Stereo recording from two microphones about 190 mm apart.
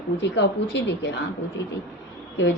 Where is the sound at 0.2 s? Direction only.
65° left (ahead or behind).